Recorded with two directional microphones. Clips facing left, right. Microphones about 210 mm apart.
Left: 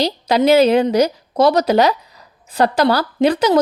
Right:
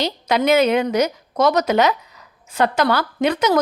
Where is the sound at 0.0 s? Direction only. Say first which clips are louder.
Left 4 dB; 35° left (ahead or behind).